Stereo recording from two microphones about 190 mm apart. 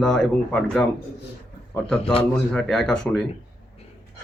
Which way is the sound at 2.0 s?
30° left (ahead or behind).